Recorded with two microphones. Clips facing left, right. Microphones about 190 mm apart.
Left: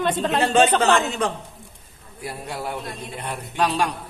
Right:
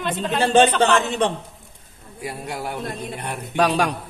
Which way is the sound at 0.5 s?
30° right (ahead or behind).